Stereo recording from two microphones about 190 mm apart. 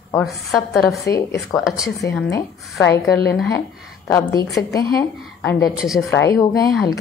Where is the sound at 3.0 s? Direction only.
Centre (ahead or behind).